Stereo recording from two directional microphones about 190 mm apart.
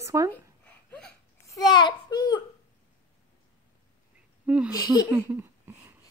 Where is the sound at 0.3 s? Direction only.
10° left (ahead or behind).